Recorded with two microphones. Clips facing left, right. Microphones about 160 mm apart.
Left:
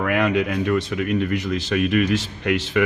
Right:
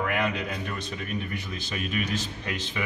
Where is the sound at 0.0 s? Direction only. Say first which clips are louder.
Left 8 dB; 70° left (ahead or behind).